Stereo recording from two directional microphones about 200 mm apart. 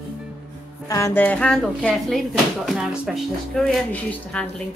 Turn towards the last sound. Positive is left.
turn(degrees=5)  # may be behind; listen again after turning